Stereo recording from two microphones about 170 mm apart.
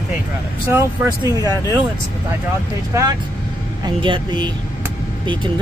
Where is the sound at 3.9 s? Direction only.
30° right (ahead or behind).